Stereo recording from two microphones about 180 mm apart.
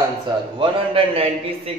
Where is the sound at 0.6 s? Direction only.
30° right (ahead or behind).